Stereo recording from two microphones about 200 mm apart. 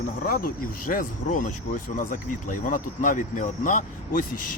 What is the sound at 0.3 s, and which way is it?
Speech, 45° left (ahead or behind).